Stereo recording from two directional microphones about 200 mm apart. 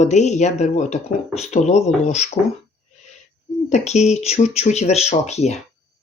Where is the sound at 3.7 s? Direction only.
35° left (ahead or behind).